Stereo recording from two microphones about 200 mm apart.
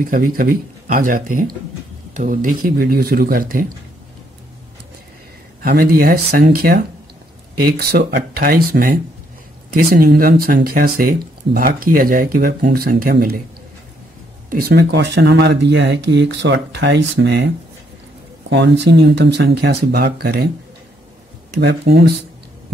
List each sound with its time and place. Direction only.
0.0 s speech: 45° right (ahead or behind)
5.6 s speech: 50° right (ahead or behind)
14.5 s speech: 50° right (ahead or behind)
18.5 s speech: 60° right (ahead or behind)
21.5 s speech: 60° right (ahead or behind)